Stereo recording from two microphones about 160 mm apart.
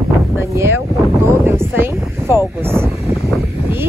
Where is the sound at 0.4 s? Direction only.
15° right (ahead or behind).